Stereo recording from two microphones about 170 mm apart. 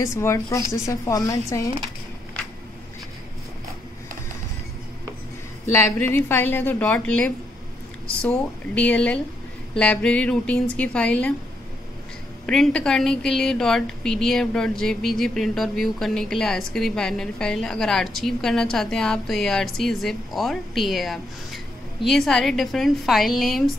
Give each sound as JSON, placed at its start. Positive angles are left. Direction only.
{"t": 0.0, "sound": "a woman's voice", "side_deg": 15}
{"t": 5.7, "sound": "a woman's voice", "side_deg": 15}
{"t": 12.4, "sound": "a woman's voice", "side_deg": 5}